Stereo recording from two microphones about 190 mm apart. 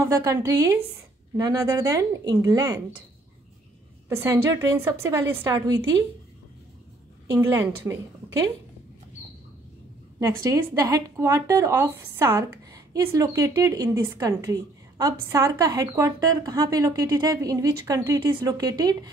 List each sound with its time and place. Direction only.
0.0 s speech: 15° right (ahead or behind)
4.1 s speech: 15° right (ahead or behind)
7.2 s speech: 15° right (ahead or behind)
10.2 s speech: 15° right (ahead or behind)